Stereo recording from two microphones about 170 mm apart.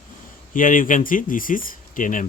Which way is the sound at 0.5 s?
55° left (ahead or behind).